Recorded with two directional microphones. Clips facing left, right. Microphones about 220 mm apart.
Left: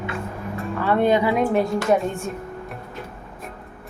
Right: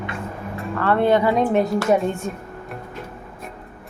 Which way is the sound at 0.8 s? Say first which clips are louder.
Right 1 dB; 15° left (ahead or behind).